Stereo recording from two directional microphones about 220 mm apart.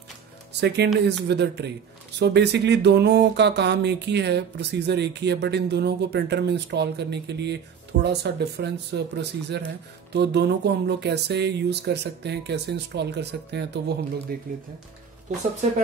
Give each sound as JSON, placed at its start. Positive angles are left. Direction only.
{"t": 0.5, "sound": "speech", "side_deg": -50}